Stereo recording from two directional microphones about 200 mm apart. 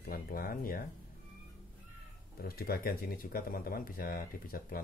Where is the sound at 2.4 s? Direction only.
50° left (ahead or behind).